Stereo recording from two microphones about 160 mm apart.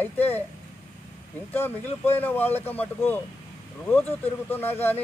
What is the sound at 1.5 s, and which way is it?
Speech, 15° left (ahead or behind).